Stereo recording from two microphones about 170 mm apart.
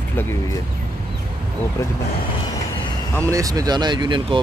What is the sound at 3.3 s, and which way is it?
Speech, 20° right (ahead or behind).